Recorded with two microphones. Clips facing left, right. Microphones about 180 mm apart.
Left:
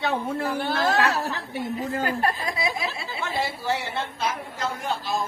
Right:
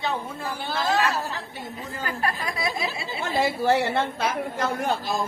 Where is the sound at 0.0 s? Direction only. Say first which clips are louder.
Left 4 dB; 65° left (ahead or behind).